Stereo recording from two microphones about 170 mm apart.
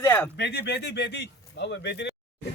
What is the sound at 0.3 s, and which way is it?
Speech, 85° left.